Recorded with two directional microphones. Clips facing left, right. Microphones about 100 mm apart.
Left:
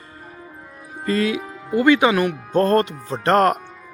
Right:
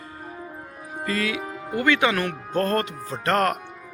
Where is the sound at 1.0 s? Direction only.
30° left (ahead or behind).